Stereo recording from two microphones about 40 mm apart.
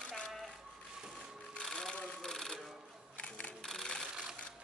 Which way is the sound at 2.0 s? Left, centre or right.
Centre.